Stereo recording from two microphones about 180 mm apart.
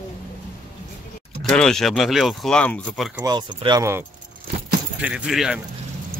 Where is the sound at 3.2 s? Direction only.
20° right (ahead or behind).